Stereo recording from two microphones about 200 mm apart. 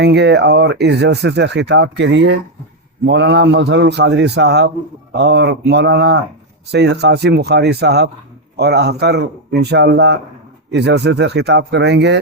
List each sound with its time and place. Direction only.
0.0 s speech: 55° right (ahead or behind)